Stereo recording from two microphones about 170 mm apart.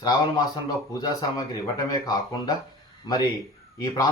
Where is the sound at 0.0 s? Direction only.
25° left (ahead or behind).